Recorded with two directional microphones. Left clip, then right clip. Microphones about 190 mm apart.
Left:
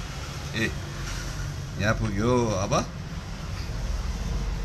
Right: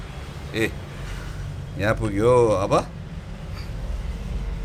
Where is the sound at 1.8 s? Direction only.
80° right.